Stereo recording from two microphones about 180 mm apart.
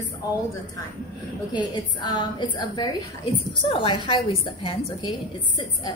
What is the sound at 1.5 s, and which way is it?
A woman's voice, 25° left (ahead or behind).